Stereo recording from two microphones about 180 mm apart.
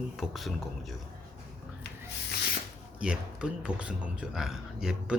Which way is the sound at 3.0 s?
5° right (ahead or behind).